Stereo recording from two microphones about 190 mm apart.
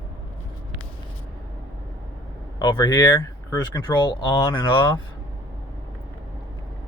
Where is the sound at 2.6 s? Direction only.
20° left (ahead or behind).